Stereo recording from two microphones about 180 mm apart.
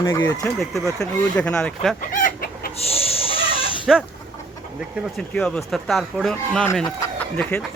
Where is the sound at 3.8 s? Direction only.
5° right (ahead or behind).